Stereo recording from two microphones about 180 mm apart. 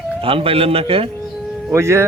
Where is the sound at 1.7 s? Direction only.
15° right (ahead or behind).